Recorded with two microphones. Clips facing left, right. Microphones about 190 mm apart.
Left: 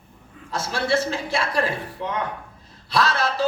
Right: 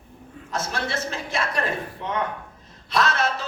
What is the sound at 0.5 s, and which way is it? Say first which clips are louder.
Speech: left 5 dB; 30° left (ahead or behind).